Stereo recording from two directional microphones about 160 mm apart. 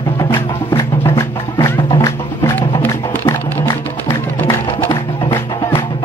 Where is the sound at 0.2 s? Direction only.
15° left (ahead or behind).